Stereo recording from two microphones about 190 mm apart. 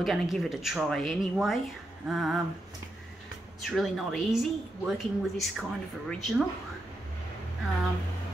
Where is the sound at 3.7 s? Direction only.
Centre (ahead or behind).